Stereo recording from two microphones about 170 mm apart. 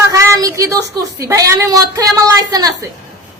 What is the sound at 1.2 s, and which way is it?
A woman's voice, 20° right (ahead or behind).